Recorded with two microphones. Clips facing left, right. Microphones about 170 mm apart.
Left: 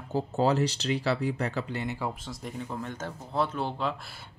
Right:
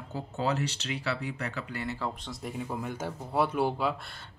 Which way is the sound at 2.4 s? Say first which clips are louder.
Right 1 dB; 10° right (ahead or behind).